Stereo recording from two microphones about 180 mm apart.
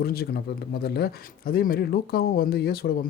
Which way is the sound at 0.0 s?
60° left (ahead or behind).